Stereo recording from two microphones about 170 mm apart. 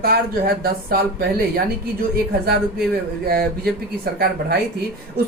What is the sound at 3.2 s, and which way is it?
Speech, 65° right (ahead or behind).